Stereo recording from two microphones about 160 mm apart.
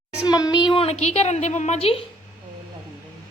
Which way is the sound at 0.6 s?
35° left (ahead or behind).